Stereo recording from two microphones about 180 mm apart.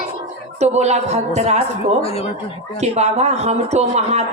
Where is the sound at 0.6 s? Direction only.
40° right (ahead or behind).